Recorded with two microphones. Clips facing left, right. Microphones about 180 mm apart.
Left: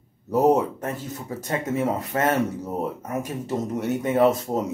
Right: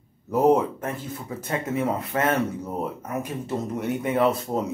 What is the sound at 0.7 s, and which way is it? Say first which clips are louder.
Speech: left 1 dB; 40° left (ahead or behind).